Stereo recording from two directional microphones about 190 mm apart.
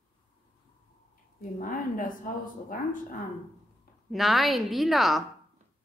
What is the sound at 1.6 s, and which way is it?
A woman's voice, 45° left (ahead or behind).